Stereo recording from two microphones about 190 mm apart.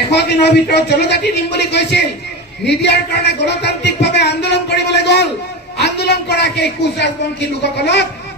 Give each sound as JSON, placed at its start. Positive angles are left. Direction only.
{"t": 0.1, "sound": "a man's voice", "side_deg": 60}